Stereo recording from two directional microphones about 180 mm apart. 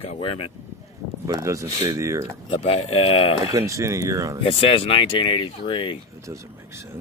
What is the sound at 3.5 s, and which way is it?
Speech, 15° right (ahead or behind).